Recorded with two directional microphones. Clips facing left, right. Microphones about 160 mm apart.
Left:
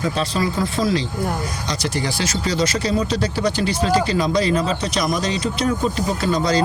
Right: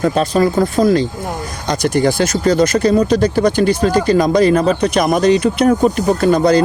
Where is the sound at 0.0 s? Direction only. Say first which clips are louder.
Right 8 dB; 50° right (ahead or behind).